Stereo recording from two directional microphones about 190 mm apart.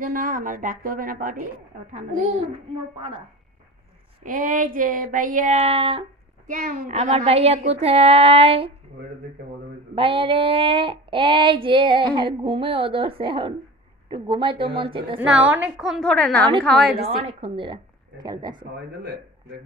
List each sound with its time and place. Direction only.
0.0 s child singing: 45° right (ahead or behind)
1.9 s a woman's voice: 40° right (ahead or behind)
2.5 s child singing: 30° right (ahead or behind)
4.2 s child singing: 45° right (ahead or behind); by 6.0 s 30° right (ahead or behind)
6.4 s child singing: 45° right (ahead or behind)
6.9 s a woman's voice: 35° right (ahead or behind)
9.9 s child singing: 25° right (ahead or behind)
15.1 s a woman's voice: 5° right (ahead or behind)
17.0 s child singing: 30° right (ahead or behind)